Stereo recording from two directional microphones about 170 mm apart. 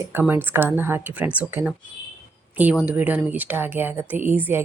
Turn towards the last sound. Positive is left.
turn(degrees=-10)  # may be behind; listen again after turning